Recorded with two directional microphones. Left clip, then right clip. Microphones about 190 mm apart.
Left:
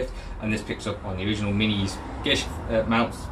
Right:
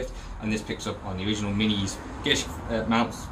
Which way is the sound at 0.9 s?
20° right (ahead or behind).